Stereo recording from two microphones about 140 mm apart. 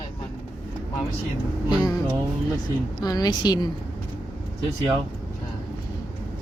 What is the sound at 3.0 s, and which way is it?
Speech, 25° left (ahead or behind).